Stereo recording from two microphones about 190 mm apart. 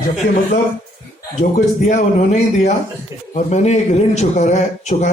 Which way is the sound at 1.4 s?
40° left (ahead or behind).